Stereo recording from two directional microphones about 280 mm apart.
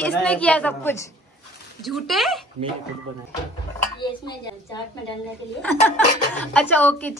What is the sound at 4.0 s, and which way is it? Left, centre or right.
A woman's voice, centre.